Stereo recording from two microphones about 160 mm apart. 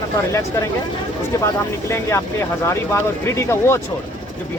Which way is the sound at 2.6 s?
15° left (ahead or behind).